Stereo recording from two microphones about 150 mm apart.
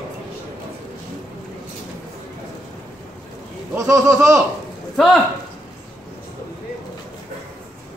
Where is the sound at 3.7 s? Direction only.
20° right (ahead or behind).